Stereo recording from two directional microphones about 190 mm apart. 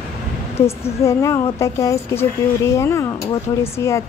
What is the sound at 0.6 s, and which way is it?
A woman's voice, 15° left (ahead or behind).